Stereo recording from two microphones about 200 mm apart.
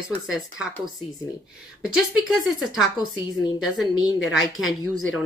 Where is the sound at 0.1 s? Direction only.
5° right (ahead or behind).